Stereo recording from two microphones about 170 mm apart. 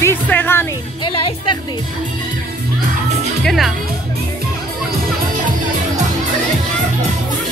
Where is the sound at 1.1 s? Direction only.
30° left (ahead or behind).